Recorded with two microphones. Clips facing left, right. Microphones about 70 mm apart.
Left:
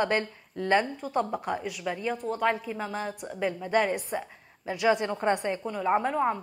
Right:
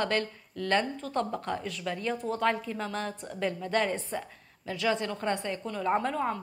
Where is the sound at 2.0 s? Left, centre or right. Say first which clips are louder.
Left 1 dB; centre.